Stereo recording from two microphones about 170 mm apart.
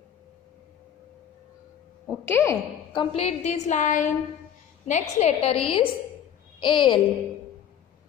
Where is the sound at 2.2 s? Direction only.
15° left (ahead or behind).